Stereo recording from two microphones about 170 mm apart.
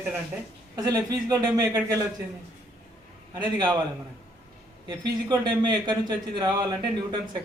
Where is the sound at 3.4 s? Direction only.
25° right (ahead or behind).